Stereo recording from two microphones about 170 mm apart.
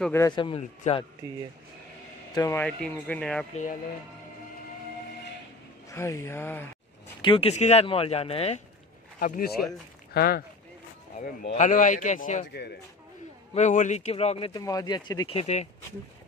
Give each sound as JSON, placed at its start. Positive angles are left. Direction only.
{"t": 0.1, "sound": "speech", "side_deg": 20}
{"t": 2.3, "sound": "speech", "side_deg": 20}
{"t": 2.6, "sound": "speech", "side_deg": 5}
{"t": 5.9, "sound": "speech", "side_deg": 15}
{"t": 7.2, "sound": "speech", "side_deg": 30}
{"t": 9.2, "sound": "speech", "side_deg": 60}
{"t": 11.5, "sound": "a man's voice", "side_deg": 50}
{"t": 13.6, "sound": "speech", "side_deg": 45}
{"t": 14.5, "sound": "speech", "side_deg": 20}